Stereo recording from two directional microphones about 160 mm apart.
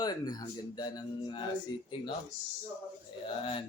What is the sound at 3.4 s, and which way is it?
Speech, 35° left (ahead or behind).